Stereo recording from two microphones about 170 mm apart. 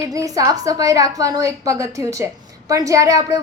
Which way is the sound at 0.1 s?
20° right (ahead or behind).